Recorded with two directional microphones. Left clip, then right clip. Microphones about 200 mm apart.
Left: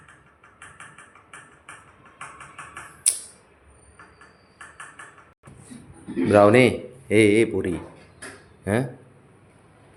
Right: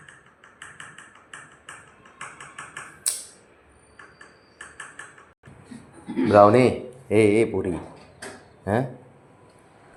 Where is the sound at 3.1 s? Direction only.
10° left (ahead or behind).